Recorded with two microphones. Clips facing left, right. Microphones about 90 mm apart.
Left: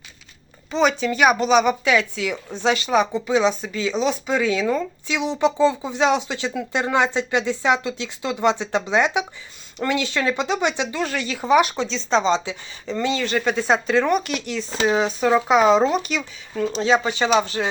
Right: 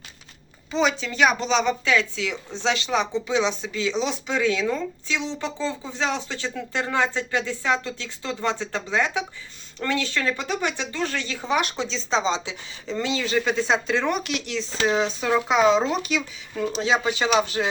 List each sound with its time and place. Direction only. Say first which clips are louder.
0.7 s a woman's voice: left 4 dB; centre (ahead or behind)